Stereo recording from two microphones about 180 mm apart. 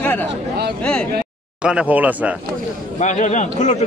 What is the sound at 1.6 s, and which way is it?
Speech, 5° right (ahead or behind).